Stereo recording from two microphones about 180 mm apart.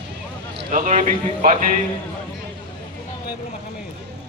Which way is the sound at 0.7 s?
45° right (ahead or behind).